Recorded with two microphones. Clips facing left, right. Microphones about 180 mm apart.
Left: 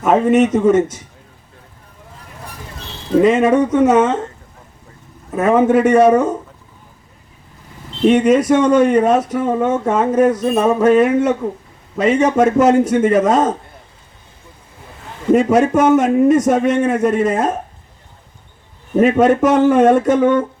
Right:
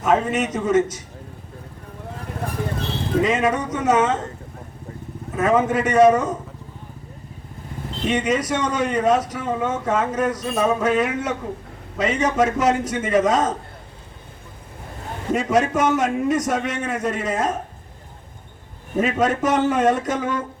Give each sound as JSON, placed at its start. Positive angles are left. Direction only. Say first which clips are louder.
{"t": 0.0, "sound": "a man's voice", "louder": "left 7 dB", "side_deg": 55}
{"t": 3.2, "sound": "a man's voice", "louder": "left 8 dB", "side_deg": 55}
{"t": 5.5, "sound": "a man's voice", "louder": "left 6 dB", "side_deg": 55}
{"t": 8.0, "sound": "speech", "louder": "left 10 dB", "side_deg": 55}
{"t": 15.3, "sound": "speech", "louder": "left 8 dB", "side_deg": 55}
{"t": 18.9, "sound": "a man's voice", "louder": "left 8 dB", "side_deg": 55}